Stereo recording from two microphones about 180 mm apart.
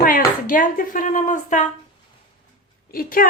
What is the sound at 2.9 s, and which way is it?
Speech, 55° left (ahead or behind).